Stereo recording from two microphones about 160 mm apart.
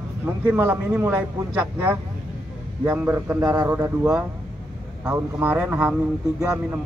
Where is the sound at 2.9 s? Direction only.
15° right (ahead or behind).